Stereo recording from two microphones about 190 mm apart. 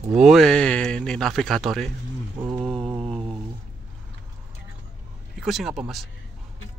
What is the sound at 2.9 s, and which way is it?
Mantra, 30° right (ahead or behind).